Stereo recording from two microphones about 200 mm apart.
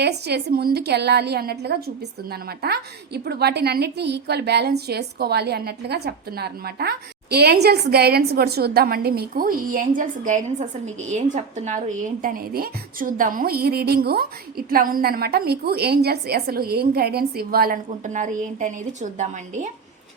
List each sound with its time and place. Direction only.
0.0 s a woman's voice: 55° right (ahead or behind); by 19.7 s 40° right (ahead or behind)